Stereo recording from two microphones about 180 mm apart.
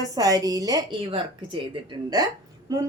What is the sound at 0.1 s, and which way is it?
A woman's voice, 20° right (ahead or behind).